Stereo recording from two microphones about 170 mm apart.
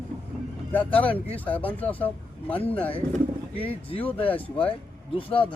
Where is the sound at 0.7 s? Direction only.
10° left (ahead or behind).